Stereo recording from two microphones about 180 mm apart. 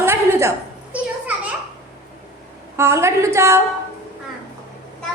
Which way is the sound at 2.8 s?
15° right (ahead or behind).